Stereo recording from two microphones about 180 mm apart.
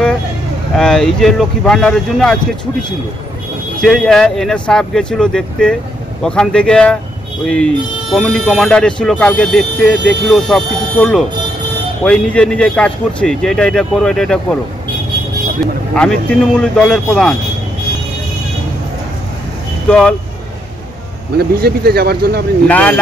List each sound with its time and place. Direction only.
0.7 s a man's voice: 5° left (ahead or behind)
3.8 s a man's voice: centre (ahead or behind)
15.9 s a man's voice: 5° left (ahead or behind)
19.9 s a man's voice: 5° left (ahead or behind)
21.4 s speech: 60° right (ahead or behind)
22.7 s speech: 10° left (ahead or behind)